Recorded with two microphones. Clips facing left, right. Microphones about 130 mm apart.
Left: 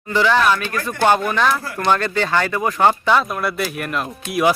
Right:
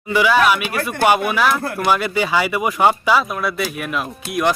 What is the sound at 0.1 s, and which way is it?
Speech, 10° right (ahead or behind).